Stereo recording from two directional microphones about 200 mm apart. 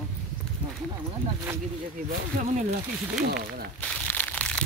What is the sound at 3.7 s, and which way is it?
Crushing, 5° left (ahead or behind).